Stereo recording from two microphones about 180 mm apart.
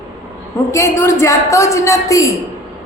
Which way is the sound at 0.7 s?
15° left (ahead or behind).